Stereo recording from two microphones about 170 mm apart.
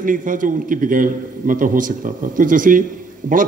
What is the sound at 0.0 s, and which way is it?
A man's voice, 50° right (ahead or behind).